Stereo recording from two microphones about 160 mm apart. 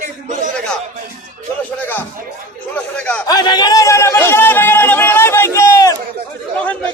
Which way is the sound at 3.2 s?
25° left (ahead or behind).